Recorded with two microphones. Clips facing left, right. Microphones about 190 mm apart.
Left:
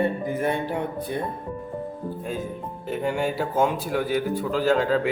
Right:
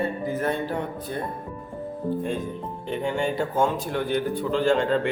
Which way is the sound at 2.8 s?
5° left (ahead or behind).